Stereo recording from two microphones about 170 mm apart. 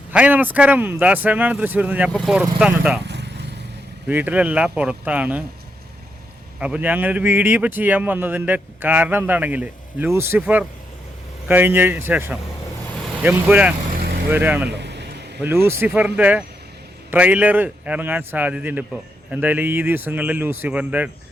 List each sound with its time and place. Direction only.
0.1 s speech: 10° right (ahead or behind)
3.1 s vehicle: 90° right
4.1 s speech: 10° right (ahead or behind)
6.6 s speech: 10° right (ahead or behind)
13.9 s vehicle: 70° right (ahead or behind)
14.3 s speech: 10° right (ahead or behind)
14.7 s a sound: 90° right
15.4 s speech: 15° right (ahead or behind)